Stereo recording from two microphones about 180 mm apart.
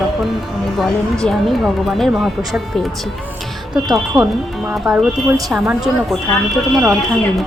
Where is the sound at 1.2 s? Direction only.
Centre (ahead or behind).